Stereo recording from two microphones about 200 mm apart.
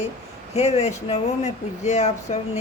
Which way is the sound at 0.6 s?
30° left (ahead or behind).